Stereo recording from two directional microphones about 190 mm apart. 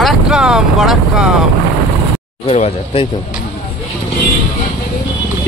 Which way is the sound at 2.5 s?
30° left (ahead or behind).